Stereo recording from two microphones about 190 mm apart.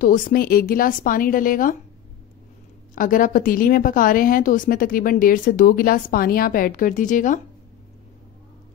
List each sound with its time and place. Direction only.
0.0 s a woman's voice: 45° left (ahead or behind)
2.9 s a woman's voice: 45° left (ahead or behind)